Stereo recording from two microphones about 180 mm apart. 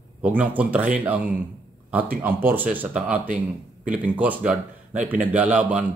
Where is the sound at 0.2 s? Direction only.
10° right (ahead or behind).